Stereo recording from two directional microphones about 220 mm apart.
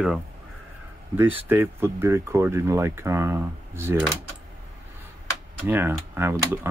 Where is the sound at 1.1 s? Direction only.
10° right (ahead or behind).